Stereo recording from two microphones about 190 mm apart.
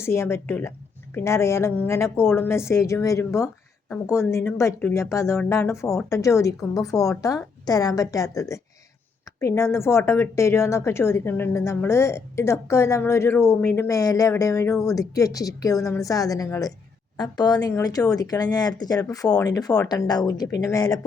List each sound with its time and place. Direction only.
0.0 s a woman's voice: 15° left (ahead or behind)